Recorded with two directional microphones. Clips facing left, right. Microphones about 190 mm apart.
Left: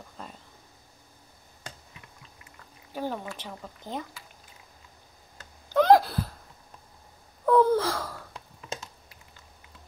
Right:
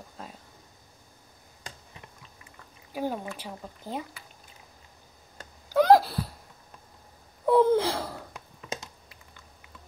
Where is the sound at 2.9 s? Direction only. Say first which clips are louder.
Right 1 dB; 10° right (ahead or behind).